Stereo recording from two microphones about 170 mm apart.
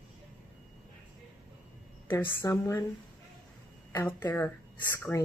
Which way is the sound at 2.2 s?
15° left (ahead or behind).